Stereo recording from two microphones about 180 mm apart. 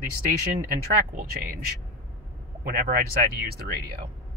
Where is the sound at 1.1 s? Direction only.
50° right (ahead or behind).